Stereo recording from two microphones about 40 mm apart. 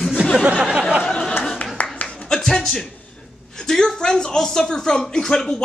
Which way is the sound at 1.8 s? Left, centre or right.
Left.